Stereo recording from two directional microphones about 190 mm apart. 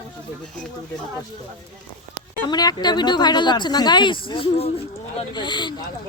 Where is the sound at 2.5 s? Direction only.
20° left (ahead or behind).